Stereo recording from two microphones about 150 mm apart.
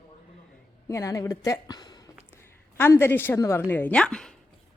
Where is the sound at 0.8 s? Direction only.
20° left (ahead or behind).